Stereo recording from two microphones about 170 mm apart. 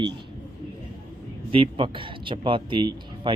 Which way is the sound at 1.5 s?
30° right (ahead or behind).